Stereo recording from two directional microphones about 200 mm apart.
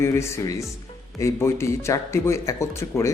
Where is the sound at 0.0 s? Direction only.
15° left (ahead or behind).